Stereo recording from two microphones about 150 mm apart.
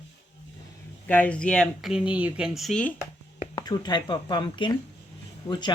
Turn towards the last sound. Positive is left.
turn(degrees=30)  # may be behind; listen again after turning